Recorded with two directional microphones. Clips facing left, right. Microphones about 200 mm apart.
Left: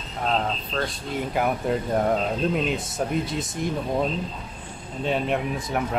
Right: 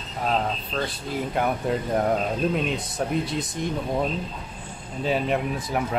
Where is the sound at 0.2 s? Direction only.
Centre (ahead or behind).